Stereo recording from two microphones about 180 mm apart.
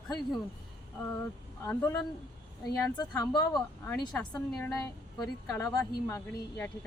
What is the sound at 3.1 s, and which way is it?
Speech, 20° left (ahead or behind).